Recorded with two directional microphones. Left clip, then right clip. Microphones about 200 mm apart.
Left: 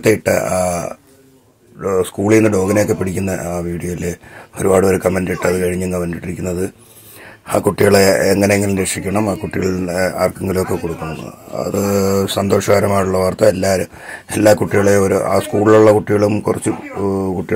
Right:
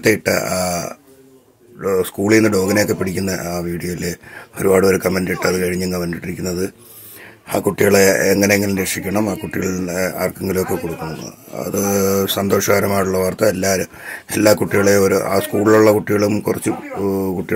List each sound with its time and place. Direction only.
0.0 s speech: centre (ahead or behind)